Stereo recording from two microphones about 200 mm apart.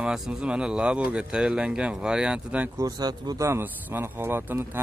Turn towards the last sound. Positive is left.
turn(degrees=-10)  # may be behind; listen again after turning